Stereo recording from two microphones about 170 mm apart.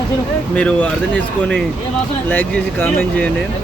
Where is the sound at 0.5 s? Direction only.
5° left (ahead or behind).